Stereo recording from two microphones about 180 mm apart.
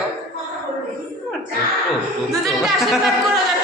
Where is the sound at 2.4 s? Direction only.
Centre (ahead or behind).